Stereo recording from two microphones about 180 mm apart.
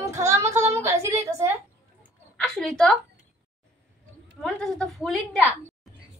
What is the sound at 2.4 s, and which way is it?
Speech, centre (ahead or behind).